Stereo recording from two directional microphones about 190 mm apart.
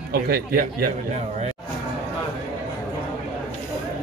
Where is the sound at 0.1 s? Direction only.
55° right (ahead or behind).